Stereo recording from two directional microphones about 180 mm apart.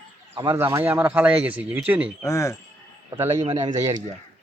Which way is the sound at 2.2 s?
15° left (ahead or behind).